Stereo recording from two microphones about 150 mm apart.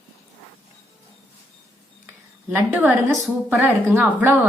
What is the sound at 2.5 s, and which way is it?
A woman's voice, 10° right (ahead or behind).